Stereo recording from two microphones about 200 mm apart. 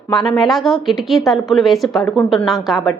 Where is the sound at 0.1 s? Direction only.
Centre (ahead or behind).